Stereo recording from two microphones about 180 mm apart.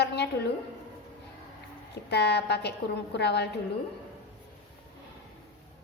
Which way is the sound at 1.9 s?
65° left (ahead or behind).